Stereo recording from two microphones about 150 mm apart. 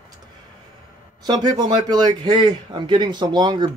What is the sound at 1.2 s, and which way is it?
A man's voice, 30° right (ahead or behind).